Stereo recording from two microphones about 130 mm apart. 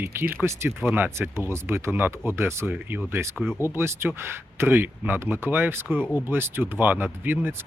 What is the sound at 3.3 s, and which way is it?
Speech, 5° left (ahead or behind).